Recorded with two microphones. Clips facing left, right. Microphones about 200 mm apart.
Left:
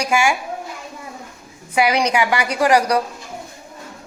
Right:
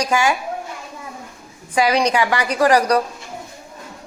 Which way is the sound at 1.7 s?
10° left (ahead or behind).